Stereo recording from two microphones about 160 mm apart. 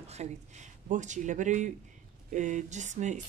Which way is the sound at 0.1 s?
45° right (ahead or behind).